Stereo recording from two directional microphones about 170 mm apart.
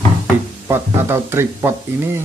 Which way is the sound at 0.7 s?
15° right (ahead or behind).